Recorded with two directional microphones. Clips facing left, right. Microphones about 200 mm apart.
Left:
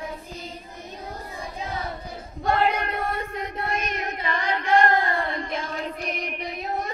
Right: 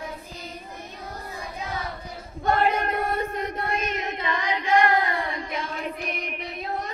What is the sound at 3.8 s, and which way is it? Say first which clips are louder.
Child singing: right 1 dB; 25° right (ahead or behind).